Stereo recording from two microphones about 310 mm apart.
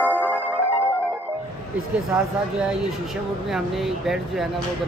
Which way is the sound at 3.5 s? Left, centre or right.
Centre.